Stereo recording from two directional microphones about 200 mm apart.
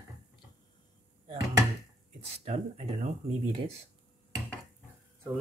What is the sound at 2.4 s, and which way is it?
Speech, 35° right (ahead or behind).